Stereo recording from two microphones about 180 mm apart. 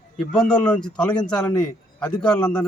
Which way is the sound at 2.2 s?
5° left (ahead or behind).